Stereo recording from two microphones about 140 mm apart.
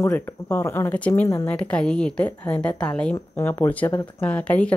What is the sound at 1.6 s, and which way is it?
A woman's voice, 5° left (ahead or behind).